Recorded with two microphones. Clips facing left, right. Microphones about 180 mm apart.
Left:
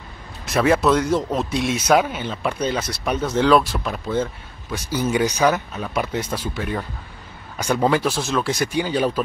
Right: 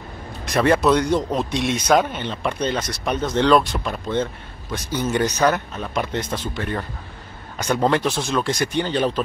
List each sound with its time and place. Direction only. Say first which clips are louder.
0.5 s a man's voice: even; centre (ahead or behind)